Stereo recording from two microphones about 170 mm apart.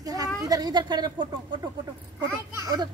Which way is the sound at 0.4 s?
20° right (ahead or behind).